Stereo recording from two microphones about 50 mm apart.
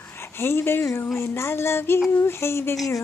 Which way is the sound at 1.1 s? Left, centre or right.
Left.